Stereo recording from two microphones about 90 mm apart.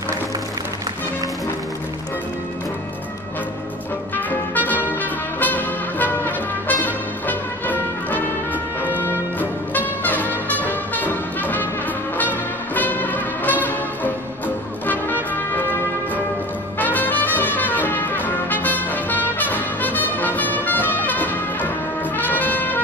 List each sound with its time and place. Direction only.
4.3 s music: 20° left (ahead or behind)
16.7 s brass instrument: 20° left (ahead or behind)